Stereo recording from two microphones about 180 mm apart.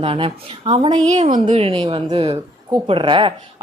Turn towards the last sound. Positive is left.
turn(degrees=-30)  # may be behind; listen again after turning